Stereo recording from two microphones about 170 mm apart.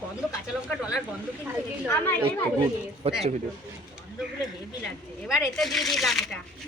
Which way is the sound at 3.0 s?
35° right (ahead or behind).